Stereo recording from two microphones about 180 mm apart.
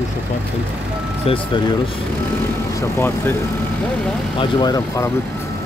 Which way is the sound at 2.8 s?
15° left (ahead or behind).